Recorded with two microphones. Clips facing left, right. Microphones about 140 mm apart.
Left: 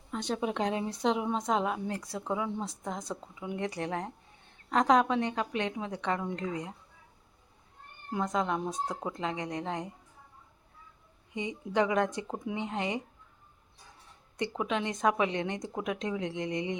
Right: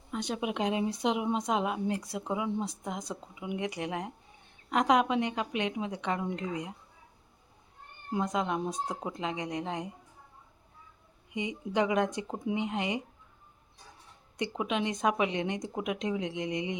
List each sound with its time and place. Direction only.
0.1 s speech: 10° right (ahead or behind)
8.1 s speech: 15° right (ahead or behind)
11.3 s speech: 15° right (ahead or behind)
14.6 s speech: 20° right (ahead or behind)